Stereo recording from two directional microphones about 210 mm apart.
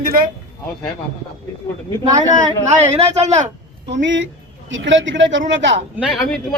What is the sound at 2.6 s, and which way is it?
Speech, 30° right (ahead or behind).